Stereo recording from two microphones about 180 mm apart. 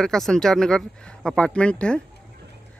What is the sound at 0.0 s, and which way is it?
Speech, 5° left (ahead or behind).